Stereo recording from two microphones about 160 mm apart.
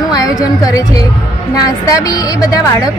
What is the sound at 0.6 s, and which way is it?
A woman's voice, 20° left (ahead or behind).